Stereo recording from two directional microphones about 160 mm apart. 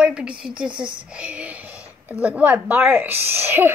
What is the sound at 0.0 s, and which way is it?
A woman's voice, 5° right (ahead or behind).